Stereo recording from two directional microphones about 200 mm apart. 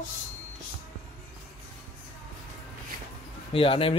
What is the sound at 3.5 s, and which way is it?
Speech, 25° left (ahead or behind).